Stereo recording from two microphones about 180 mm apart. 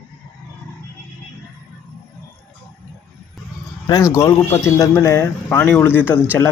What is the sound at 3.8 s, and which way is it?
Speech, 20° left (ahead or behind).